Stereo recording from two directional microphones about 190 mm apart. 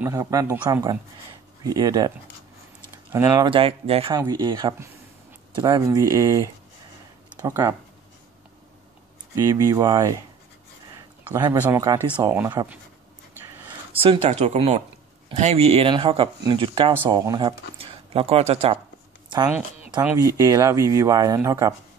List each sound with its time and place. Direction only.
0.0 s speech: 15° right (ahead or behind)
3.4 s speech: 30° right (ahead or behind)
9.3 s speech: 20° right (ahead or behind)
11.5 s speech: 10° right (ahead or behind)
13.9 s speech: 30° right (ahead or behind)
19.2 s a sound: 25° right (ahead or behind)
20.2 s speech: 15° right (ahead or behind)